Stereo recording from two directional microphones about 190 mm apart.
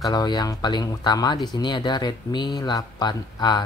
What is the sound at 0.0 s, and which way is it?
Speech, 20° left (ahead or behind).